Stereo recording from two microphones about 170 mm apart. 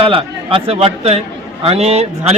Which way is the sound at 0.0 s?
30° right (ahead or behind).